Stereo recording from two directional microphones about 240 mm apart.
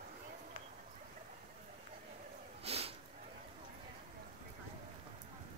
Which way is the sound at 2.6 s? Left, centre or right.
Right.